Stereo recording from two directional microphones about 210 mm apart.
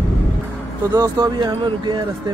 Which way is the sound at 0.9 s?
15° right (ahead or behind).